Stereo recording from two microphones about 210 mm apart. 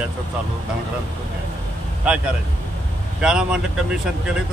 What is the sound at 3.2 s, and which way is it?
Speech, 5° right (ahead or behind).